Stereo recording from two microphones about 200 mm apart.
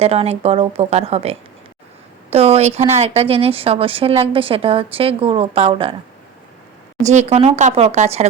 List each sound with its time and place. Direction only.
0.0 s a woman's voice: 30° right (ahead or behind)
7.0 s speech: 35° right (ahead or behind)